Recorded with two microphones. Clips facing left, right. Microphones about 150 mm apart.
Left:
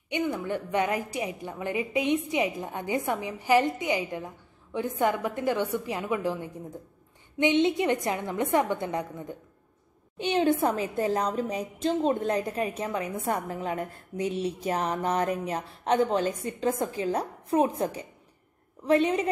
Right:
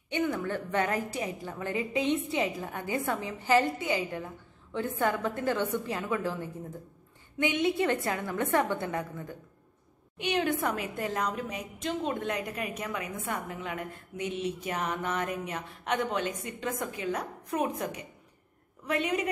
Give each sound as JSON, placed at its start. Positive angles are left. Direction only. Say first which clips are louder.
{"t": 0.1, "sound": "a woman's voice", "louder": "left 1 dB", "side_deg": 15}